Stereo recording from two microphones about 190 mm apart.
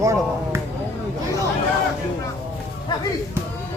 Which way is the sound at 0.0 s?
15° right (ahead or behind).